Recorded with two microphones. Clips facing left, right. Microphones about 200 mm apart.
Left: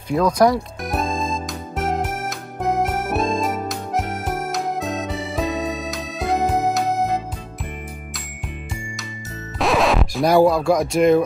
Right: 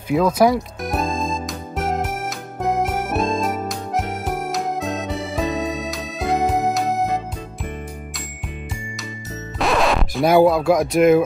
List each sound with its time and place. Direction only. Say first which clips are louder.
0.1 s speech: right 1 dB; 5° right (ahead or behind)
0.8 s music: even; centre (ahead or behind)
9.6 s speech: left 1 dB; centre (ahead or behind)